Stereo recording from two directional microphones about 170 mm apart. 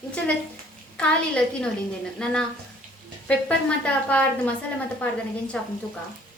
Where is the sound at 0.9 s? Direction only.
5° left (ahead or behind).